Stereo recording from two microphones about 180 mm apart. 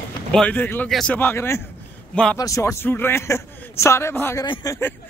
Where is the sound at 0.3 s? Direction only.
5° left (ahead or behind).